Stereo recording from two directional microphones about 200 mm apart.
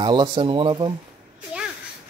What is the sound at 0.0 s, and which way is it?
Speech, 25° right (ahead or behind).